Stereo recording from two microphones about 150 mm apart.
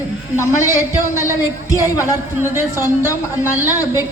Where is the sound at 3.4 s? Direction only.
15° right (ahead or behind).